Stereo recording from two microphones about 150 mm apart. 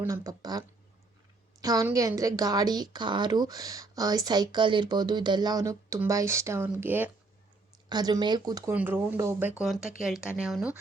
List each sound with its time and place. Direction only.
0.0 s a woman's voice: 20° right (ahead or behind)
1.6 s a woman's voice: 25° right (ahead or behind)
7.9 s a woman's voice: 25° right (ahead or behind)
8.7 s speech: 10° right (ahead or behind)
9.6 s speech: centre (ahead or behind)